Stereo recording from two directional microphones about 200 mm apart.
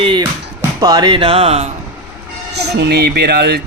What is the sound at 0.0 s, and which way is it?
Speech, 25° right (ahead or behind).